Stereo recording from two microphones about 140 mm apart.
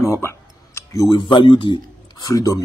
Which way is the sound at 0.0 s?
20° left (ahead or behind).